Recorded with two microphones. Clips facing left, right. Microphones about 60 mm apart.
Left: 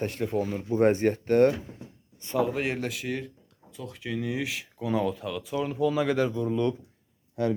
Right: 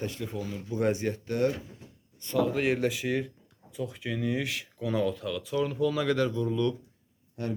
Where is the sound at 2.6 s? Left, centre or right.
Centre.